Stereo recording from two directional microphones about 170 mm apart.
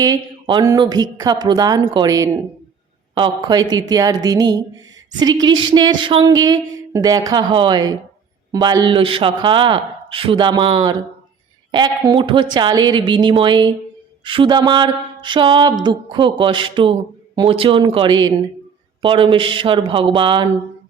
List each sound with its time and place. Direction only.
0.0 s speech: 25° right (ahead or behind)